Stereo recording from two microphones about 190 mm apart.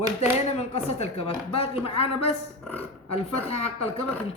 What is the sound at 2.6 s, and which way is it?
Speech, 10° left (ahead or behind).